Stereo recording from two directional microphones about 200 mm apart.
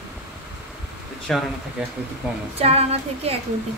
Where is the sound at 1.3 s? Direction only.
5° left (ahead or behind).